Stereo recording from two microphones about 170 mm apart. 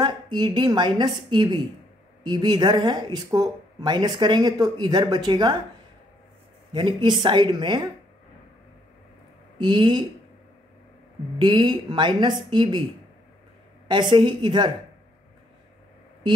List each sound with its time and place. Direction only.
0.0 s a woman's voice: 25° right (ahead or behind)
6.7 s speech: 25° right (ahead or behind)
9.6 s speech: 25° right (ahead or behind)
11.3 s speech: 25° right (ahead or behind)
14.1 s speech: 25° right (ahead or behind)